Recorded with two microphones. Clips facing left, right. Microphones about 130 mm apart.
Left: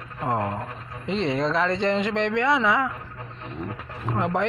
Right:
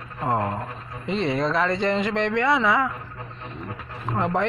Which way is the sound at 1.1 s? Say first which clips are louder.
Even; 20° left (ahead or behind).